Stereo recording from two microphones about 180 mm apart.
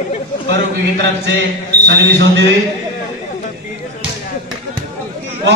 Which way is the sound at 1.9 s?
70° right (ahead or behind).